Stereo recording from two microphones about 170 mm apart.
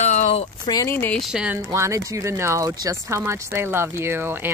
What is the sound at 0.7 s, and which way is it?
Speech, 20° left (ahead or behind).